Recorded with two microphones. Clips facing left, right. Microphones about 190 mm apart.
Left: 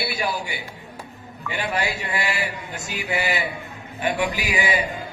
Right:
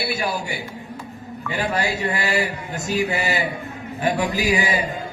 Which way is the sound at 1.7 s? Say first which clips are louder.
Right 2 dB; 40° right (ahead or behind).